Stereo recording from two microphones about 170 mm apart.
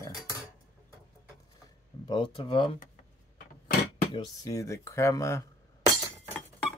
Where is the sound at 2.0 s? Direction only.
30° left (ahead or behind).